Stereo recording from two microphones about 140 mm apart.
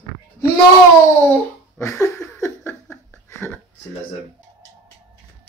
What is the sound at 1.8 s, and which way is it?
Laughter, 20° left (ahead or behind).